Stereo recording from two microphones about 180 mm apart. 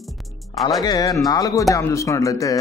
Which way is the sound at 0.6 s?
Centre (ahead or behind).